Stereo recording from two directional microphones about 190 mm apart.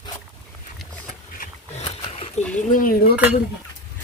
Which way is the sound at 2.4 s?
35° left (ahead or behind).